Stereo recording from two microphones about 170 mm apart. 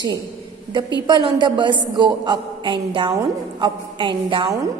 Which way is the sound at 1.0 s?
30° right (ahead or behind).